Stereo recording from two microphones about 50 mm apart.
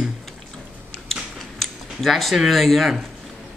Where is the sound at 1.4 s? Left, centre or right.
Centre.